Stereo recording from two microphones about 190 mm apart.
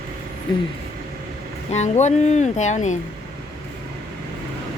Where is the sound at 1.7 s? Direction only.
40° left (ahead or behind).